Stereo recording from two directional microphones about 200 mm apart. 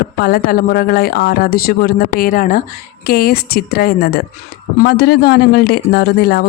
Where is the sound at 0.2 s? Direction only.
45° left (ahead or behind).